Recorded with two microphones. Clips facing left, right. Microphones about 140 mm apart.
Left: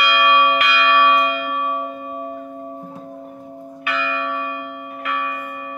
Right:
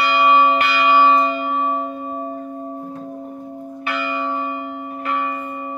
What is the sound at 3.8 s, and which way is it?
Church bell, 30° right (ahead or behind).